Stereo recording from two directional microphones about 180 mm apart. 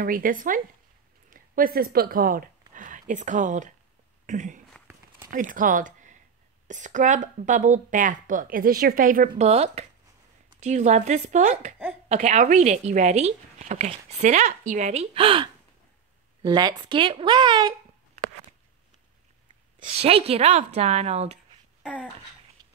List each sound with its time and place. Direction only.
0.0 s speech: 50° right (ahead or behind)
9.4 s a woman's voice: 35° right (ahead or behind)
19.8 s a woman's voice: 35° right (ahead or behind)
22.6 s mechanisms: 25° right (ahead or behind)